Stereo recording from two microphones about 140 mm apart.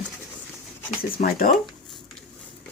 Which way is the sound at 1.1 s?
90° left.